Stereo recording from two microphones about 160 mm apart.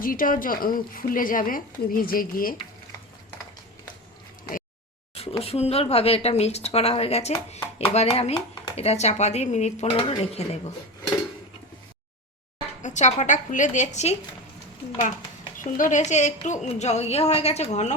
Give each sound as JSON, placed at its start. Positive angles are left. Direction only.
{"t": 0.0, "sound": "a woman's voice", "side_deg": 60}
{"t": 5.4, "sound": "a woman's voice", "side_deg": 40}
{"t": 12.8, "sound": "a woman's voice", "side_deg": 50}
{"t": 15.5, "sound": "a woman's voice", "side_deg": 50}